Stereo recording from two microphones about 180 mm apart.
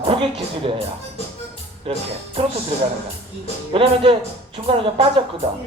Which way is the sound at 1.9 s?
30° right (ahead or behind).